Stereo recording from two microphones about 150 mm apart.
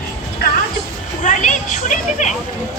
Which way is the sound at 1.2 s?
55° left (ahead or behind).